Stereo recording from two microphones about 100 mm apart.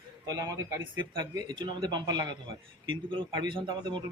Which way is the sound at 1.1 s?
40° right (ahead or behind).